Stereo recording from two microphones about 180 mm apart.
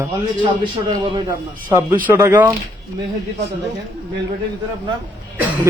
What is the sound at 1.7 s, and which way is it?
Speech, 15° right (ahead or behind).